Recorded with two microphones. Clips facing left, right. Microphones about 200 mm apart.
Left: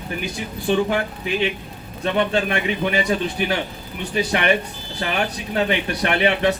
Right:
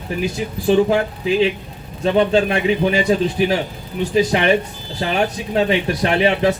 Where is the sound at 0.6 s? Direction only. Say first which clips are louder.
Right 5 dB; 30° right (ahead or behind).